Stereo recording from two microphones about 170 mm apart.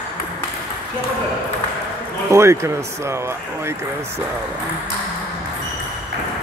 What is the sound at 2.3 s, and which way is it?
Speech, 15° right (ahead or behind).